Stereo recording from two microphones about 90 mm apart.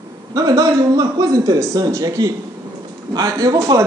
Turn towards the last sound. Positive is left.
turn(degrees=-40)  # may be behind; listen again after turning